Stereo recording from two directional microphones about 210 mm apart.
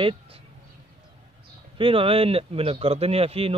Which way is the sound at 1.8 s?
25° right (ahead or behind).